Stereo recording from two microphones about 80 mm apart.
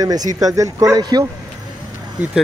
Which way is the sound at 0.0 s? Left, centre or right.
Right.